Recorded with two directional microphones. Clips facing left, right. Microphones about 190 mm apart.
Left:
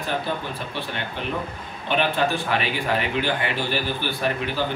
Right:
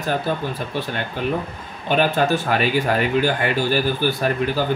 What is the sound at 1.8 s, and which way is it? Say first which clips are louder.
Speech: right 4 dB; 40° right (ahead or behind).